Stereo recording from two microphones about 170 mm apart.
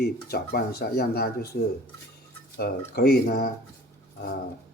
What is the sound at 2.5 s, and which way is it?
Speech, 65° left (ahead or behind).